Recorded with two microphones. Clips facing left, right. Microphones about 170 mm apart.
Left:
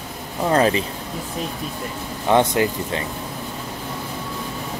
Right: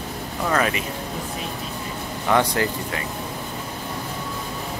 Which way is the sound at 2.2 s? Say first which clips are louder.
Left 3 dB; 20° left (ahead or behind).